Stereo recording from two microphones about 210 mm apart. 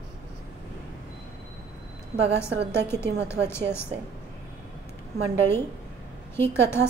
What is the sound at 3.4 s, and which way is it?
Speech, 10° left (ahead or behind).